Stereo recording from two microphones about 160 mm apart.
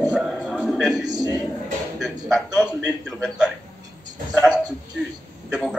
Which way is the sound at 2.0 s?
Centre (ahead or behind).